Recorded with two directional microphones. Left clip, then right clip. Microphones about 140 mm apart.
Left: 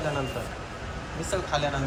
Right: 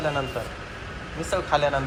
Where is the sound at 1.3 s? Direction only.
5° left (ahead or behind).